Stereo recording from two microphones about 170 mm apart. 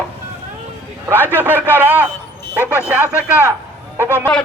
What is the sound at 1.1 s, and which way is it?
Speech, 10° left (ahead or behind).